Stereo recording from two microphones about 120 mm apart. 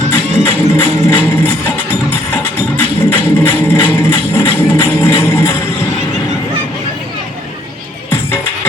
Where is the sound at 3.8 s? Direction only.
20° left (ahead or behind).